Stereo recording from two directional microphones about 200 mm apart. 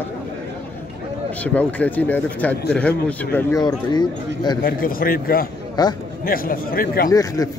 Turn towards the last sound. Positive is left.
turn(degrees=45)  # may be behind; listen again after turning